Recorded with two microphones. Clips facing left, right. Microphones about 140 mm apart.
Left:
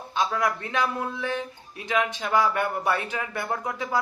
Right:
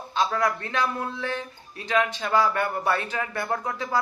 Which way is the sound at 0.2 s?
20° left (ahead or behind).